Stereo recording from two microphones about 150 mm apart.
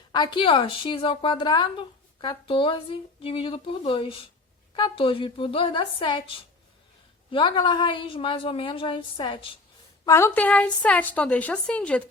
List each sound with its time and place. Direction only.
0.1 s a woman's voice: 30° left (ahead or behind)
10.1 s a woman's voice: 15° left (ahead or behind)